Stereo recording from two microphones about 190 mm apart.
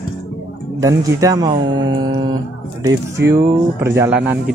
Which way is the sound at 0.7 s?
15° right (ahead or behind).